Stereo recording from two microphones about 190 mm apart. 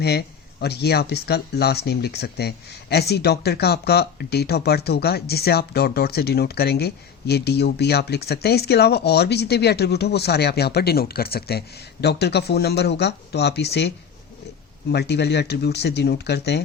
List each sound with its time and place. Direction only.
0.0 s speech: 60° left (ahead or behind)